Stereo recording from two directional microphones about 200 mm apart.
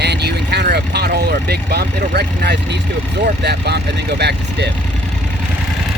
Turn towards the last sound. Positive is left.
turn(degrees=-55)  # may be behind; listen again after turning